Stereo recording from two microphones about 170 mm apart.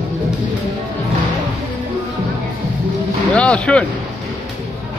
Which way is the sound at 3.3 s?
5° left (ahead or behind).